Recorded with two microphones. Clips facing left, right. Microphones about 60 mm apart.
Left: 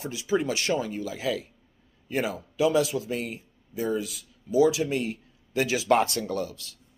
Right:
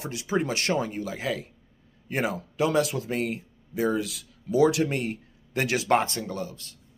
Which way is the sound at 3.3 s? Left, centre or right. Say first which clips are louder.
Right 3 dB; right.